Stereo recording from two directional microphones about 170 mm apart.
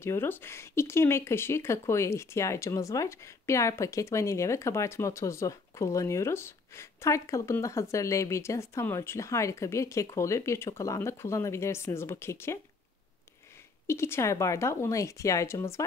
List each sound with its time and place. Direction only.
0.0 s speech: 15° left (ahead or behind)
13.8 s speech: 15° left (ahead or behind)